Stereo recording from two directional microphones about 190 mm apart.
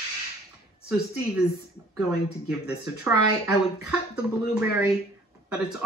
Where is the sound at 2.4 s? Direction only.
5° right (ahead or behind).